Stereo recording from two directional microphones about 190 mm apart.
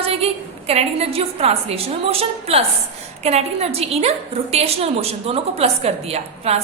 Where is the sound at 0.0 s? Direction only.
30° right (ahead or behind).